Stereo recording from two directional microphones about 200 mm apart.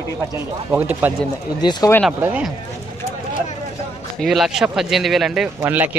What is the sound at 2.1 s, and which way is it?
Speech, 5° right (ahead or behind).